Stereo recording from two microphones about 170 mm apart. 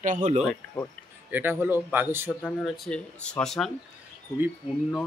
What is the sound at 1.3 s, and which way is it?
Speech, 10° right (ahead or behind).